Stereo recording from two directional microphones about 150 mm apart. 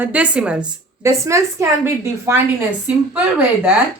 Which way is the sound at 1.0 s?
20° right (ahead or behind).